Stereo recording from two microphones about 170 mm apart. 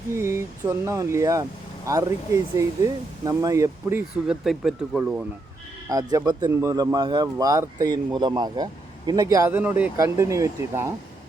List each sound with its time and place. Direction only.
0.1 s speech: 15° right (ahead or behind)
5.9 s speech: 20° right (ahead or behind)